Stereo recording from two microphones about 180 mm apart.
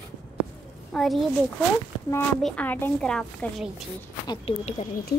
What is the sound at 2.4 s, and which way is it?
A woman's voice, 5° left (ahead or behind).